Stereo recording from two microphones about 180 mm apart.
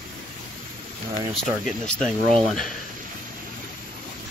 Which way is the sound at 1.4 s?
Centre (ahead or behind).